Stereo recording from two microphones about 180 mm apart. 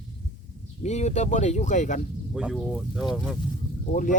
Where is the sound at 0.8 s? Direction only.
40° left (ahead or behind).